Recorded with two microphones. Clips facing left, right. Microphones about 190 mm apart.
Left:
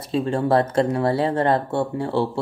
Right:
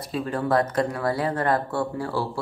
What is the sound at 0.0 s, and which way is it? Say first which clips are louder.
Speech: left 5 dB; 25° left (ahead or behind).